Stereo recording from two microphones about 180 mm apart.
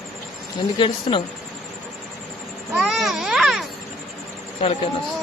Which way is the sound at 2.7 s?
5° right (ahead or behind).